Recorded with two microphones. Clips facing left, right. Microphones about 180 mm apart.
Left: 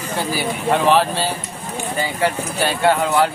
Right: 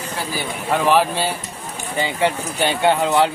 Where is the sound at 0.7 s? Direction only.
10° right (ahead or behind).